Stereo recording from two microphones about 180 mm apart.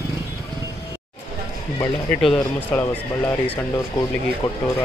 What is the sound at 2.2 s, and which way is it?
Speech, 5° left (ahead or behind).